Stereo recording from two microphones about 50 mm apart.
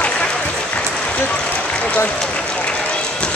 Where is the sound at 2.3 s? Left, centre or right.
Left.